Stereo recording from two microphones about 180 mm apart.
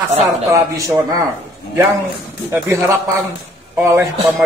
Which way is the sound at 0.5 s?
20° right (ahead or behind).